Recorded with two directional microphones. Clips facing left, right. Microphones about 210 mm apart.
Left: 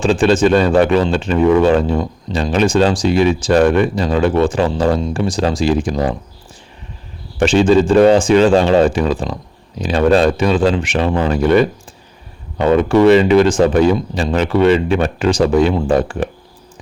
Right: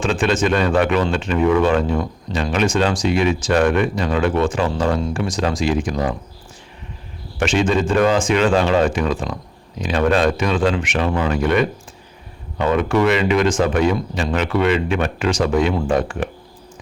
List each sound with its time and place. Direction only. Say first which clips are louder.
0.0 s speech: left 6 dB; 30° left (ahead or behind)
7.3 s speech: left 7 dB; 30° left (ahead or behind)